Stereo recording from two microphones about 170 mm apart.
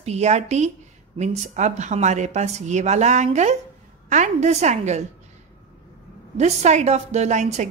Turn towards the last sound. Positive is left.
turn(degrees=-45)  # may be behind; listen again after turning